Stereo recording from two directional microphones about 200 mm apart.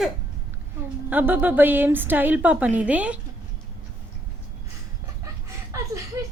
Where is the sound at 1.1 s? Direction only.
10° right (ahead or behind).